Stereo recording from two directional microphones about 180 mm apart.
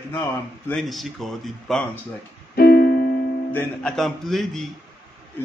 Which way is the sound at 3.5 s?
5° left (ahead or behind).